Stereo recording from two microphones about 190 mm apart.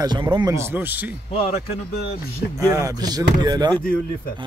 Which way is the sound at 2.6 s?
15° right (ahead or behind).